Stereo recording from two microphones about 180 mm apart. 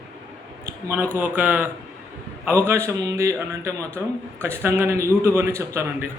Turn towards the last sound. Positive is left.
turn(degrees=-15)  # may be behind; listen again after turning